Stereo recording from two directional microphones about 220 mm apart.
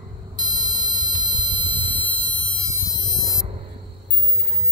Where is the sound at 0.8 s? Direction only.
20° right (ahead or behind).